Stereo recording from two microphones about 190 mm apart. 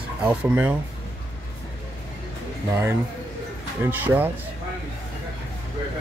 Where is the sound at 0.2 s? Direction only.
10° right (ahead or behind).